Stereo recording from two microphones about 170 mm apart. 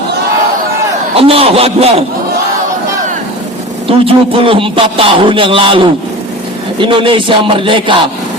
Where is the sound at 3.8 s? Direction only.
30° right (ahead or behind).